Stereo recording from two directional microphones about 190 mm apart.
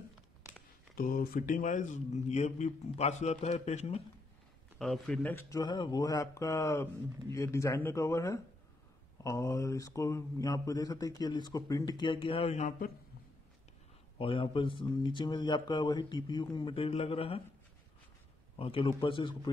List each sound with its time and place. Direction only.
0.9 s speech: 50° left (ahead or behind); by 4.0 s 35° left (ahead or behind)
4.7 s speech: centre (ahead or behind); by 12.9 s 45° left (ahead or behind)
14.1 s speech: 25° left (ahead or behind)
18.6 s speech: 30° left (ahead or behind)